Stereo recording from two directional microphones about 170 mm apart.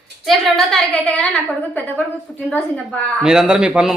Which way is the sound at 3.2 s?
5° right (ahead or behind).